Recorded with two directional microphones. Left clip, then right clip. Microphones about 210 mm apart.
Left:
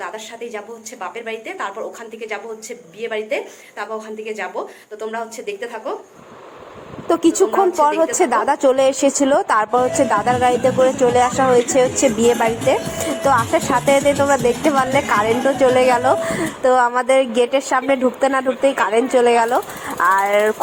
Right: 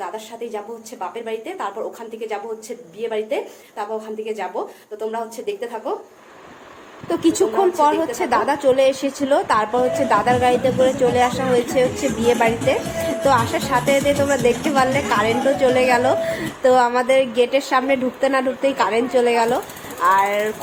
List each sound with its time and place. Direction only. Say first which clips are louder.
0.0 s a woman's voice: even; 5° right (ahead or behind)
7.1 s a woman's voice: left 3 dB; 30° left (ahead or behind)